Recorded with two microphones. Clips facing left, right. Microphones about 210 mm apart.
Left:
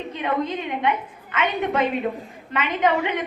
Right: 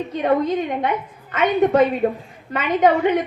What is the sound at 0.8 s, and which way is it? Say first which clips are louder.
A woman's voice: right 1 dB; 45° right (ahead or behind).